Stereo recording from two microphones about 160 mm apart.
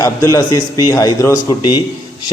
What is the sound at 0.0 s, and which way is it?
A man's voice, 20° left (ahead or behind).